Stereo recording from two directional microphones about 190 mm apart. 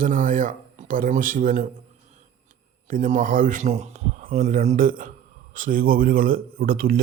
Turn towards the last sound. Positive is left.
turn(degrees=-50)  # may be behind; listen again after turning